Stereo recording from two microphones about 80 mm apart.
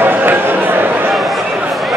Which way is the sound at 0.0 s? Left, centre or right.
Right.